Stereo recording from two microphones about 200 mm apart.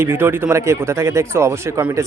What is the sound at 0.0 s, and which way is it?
Speech, 10° right (ahead or behind).